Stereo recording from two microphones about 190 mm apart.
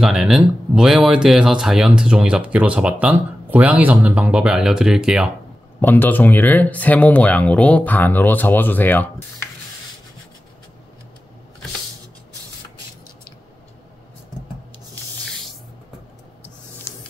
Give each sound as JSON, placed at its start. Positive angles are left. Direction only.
{"t": 0.0, "sound": "speech", "side_deg": 0}
{"t": 5.8, "sound": "speech", "side_deg": 10}